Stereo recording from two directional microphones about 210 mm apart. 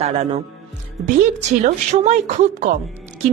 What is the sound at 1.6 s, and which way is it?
Speech, 35° right (ahead or behind).